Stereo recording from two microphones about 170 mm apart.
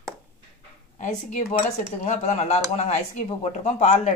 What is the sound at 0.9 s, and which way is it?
Speech, 45° left (ahead or behind).